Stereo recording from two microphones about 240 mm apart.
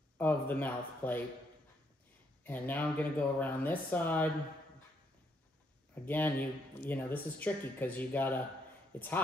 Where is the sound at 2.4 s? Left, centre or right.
Centre.